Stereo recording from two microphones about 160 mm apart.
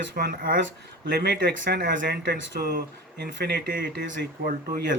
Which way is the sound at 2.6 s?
80° right.